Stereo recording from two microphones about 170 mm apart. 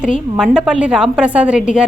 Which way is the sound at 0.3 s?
5° right (ahead or behind).